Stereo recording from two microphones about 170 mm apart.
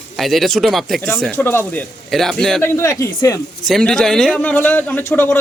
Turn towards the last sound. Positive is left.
turn(degrees=10)  # may be behind; listen again after turning